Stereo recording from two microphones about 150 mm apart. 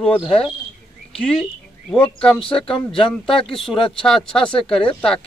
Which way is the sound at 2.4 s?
35° left (ahead or behind).